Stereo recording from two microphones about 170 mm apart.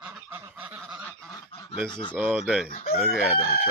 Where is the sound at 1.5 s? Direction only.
35° left (ahead or behind).